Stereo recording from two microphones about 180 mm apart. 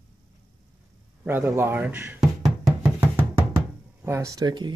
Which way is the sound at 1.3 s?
10° right (ahead or behind).